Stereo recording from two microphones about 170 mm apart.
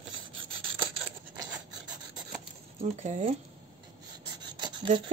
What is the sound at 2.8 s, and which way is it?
Speech, 45° right (ahead or behind).